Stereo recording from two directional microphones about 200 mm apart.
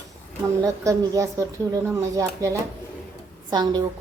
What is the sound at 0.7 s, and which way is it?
A woman's voice, 15° right (ahead or behind).